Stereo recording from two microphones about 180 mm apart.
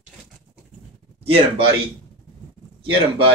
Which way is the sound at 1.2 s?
30° right (ahead or behind).